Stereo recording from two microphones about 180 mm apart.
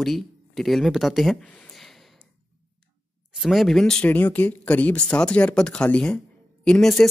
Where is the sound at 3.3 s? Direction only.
Centre (ahead or behind).